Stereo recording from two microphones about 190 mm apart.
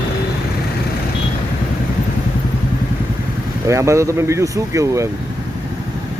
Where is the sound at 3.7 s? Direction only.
15° right (ahead or behind).